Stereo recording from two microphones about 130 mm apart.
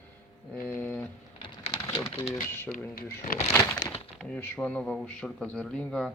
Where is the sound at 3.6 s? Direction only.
30° left (ahead or behind).